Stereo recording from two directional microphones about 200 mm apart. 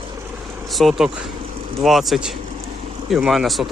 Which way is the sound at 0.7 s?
Centre (ahead or behind).